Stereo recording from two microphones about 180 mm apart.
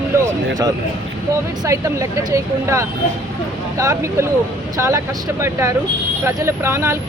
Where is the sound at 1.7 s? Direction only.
15° right (ahead or behind).